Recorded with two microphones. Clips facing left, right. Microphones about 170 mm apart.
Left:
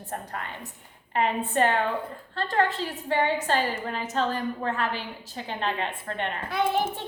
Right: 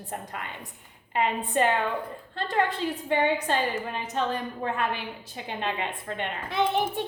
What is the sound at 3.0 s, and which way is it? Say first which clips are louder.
A woman's voice: even; 15° right (ahead or behind).